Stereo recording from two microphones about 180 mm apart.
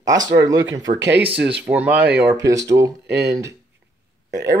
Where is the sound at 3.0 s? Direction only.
65° right (ahead or behind).